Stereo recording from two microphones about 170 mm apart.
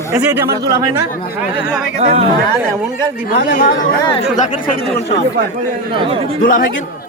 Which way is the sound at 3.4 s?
55° left (ahead or behind).